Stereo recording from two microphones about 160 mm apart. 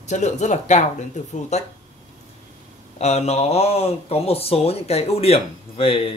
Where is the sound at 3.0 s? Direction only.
40° left (ahead or behind).